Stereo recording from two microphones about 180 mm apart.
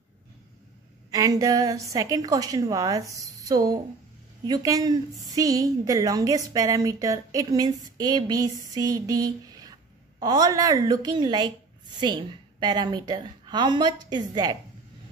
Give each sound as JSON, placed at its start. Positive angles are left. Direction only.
{"t": 1.1, "sound": "a woman's voice", "side_deg": -20}